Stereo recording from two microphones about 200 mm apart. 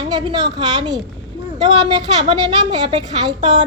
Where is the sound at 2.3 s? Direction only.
20° right (ahead or behind).